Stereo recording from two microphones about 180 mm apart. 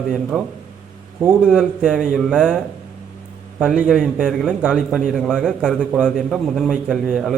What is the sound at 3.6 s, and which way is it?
A man's voice, 5° right (ahead or behind).